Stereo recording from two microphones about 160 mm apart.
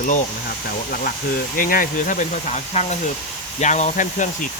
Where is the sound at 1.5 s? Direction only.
60° left (ahead or behind).